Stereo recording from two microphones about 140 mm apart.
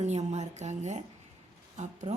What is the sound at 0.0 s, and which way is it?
A woman's voice, 55° right (ahead or behind).